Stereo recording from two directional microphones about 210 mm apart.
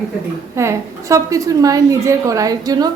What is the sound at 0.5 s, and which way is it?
A woman's voice, 15° right (ahead or behind).